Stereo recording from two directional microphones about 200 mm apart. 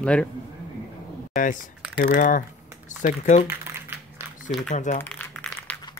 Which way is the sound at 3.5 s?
10° right (ahead or behind).